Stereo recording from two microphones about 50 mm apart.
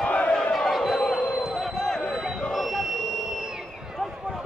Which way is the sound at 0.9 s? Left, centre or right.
Centre.